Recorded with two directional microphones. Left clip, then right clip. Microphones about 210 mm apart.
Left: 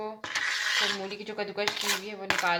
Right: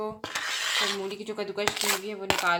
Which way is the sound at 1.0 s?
10° right (ahead or behind).